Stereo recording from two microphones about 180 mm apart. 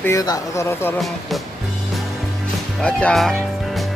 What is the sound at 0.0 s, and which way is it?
Speech, 20° left (ahead or behind).